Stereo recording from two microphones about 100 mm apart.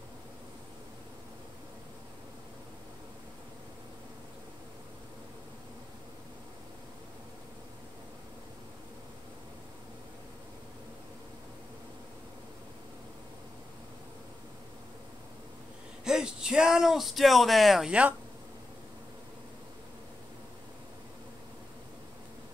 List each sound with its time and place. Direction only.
16.0 s speech: 5° right (ahead or behind)